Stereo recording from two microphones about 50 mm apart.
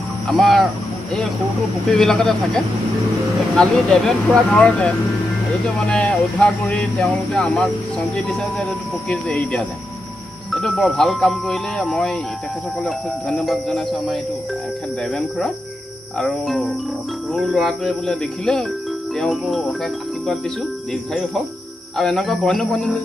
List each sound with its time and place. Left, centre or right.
0.3 s speech: centre
1.9 s speech: centre
6.8 s speech: centre
8.2 s speech: left
10.5 s speech: centre
17.3 s speech: centre
19.1 s speech: centre
22.2 s speech: centre